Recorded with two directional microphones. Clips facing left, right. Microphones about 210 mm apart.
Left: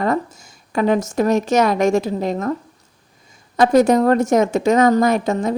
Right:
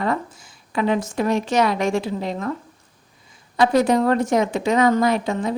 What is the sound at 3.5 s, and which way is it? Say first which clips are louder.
A woman's voice: left 4 dB; 45° left (ahead or behind).